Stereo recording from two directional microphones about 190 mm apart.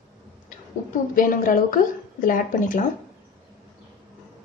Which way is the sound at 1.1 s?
45° left (ahead or behind).